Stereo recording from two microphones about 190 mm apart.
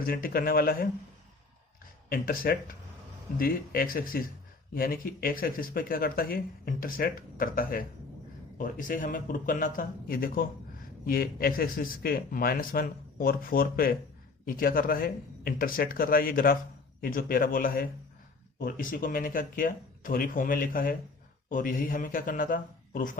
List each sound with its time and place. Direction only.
0.0 s speech: 50° left (ahead or behind)
2.0 s speech: 50° left (ahead or behind)